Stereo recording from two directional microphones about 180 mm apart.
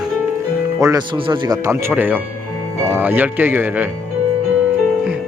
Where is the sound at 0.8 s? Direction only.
20° right (ahead or behind).